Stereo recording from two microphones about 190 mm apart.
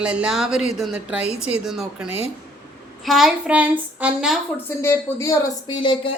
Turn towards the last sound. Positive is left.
turn(degrees=25)  # may be behind; listen again after turning